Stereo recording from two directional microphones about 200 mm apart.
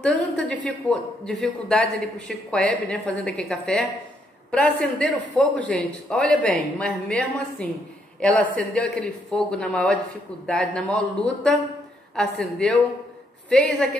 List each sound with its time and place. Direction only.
0.0 s a woman's voice: 5° left (ahead or behind)